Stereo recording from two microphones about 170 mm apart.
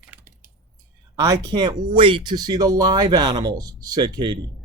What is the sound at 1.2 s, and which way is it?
Speech, 25° right (ahead or behind).